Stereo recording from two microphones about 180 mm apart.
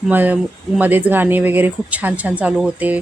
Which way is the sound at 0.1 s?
10° right (ahead or behind).